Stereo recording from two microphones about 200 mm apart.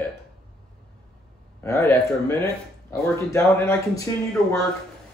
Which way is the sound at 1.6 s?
10° left (ahead or behind).